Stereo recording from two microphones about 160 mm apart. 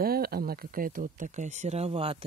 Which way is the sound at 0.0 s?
70° right (ahead or behind).